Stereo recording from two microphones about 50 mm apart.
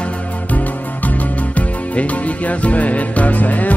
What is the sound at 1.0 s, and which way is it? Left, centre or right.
Music, left.